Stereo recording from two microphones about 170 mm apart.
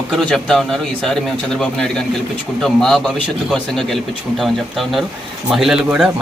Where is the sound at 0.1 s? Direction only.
5° left (ahead or behind).